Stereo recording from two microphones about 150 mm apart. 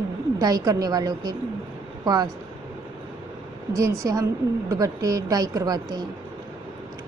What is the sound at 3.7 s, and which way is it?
A woman's voice, 20° right (ahead or behind).